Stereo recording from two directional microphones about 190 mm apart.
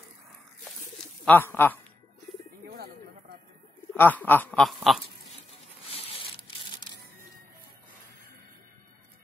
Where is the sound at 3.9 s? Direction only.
10° left (ahead or behind).